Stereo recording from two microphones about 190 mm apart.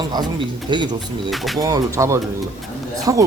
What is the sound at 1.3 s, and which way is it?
Speech, centre (ahead or behind).